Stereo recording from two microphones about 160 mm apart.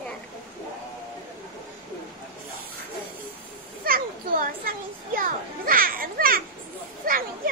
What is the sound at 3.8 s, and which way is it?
Children playing, 60° right (ahead or behind).